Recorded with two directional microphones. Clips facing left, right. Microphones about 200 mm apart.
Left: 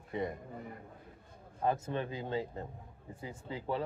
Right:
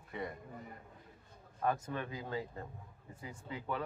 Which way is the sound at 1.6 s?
25° left (ahead or behind).